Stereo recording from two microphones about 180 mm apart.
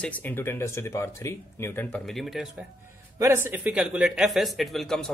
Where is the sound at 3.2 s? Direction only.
15° right (ahead or behind).